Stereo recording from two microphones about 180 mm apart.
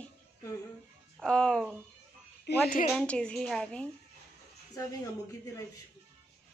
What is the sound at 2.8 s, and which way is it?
Speech, 5° left (ahead or behind).